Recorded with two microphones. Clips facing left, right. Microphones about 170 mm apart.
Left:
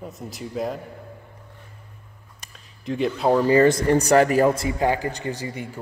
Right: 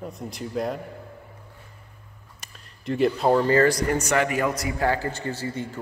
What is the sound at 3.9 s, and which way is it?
A man's voice, 35° left (ahead or behind).